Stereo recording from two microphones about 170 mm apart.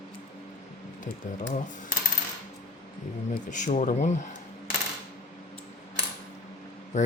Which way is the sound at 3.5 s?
45° left (ahead or behind).